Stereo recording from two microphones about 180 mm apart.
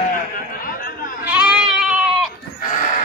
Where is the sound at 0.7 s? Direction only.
50° left (ahead or behind).